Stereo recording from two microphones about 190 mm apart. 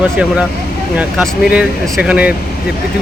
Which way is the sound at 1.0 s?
5° right (ahead or behind).